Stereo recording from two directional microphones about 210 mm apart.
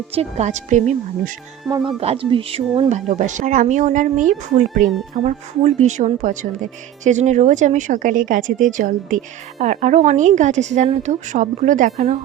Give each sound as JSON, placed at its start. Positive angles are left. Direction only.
{"t": 0.1, "sound": "speech", "side_deg": -30}
{"t": 1.7, "sound": "speech", "side_deg": -15}
{"t": 2.0, "sound": "speech", "side_deg": -25}